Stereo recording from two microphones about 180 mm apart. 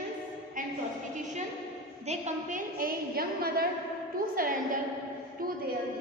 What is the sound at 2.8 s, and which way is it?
A woman's voice, 55° right (ahead or behind).